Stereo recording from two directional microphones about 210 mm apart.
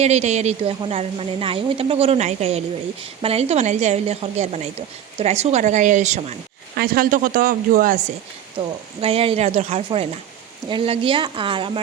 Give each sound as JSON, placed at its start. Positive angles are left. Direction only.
{"t": 0.0, "sound": "a woman's voice", "side_deg": -30}
{"t": 6.7, "sound": "a woman's voice", "side_deg": -45}